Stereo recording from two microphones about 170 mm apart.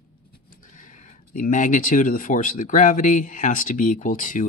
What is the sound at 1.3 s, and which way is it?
Speech, 50° left (ahead or behind).